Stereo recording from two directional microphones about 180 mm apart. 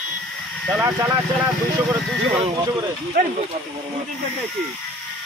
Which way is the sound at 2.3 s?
30° right (ahead or behind).